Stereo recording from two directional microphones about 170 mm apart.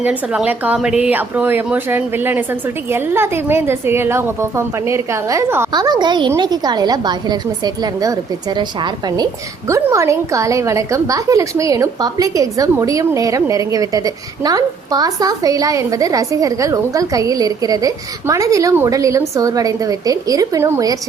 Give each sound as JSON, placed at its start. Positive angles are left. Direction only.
{"t": 0.0, "sound": "a woman's voice", "side_deg": -10}